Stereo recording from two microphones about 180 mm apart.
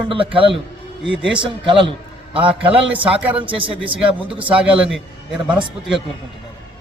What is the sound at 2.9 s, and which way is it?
A man's voice, 10° right (ahead or behind).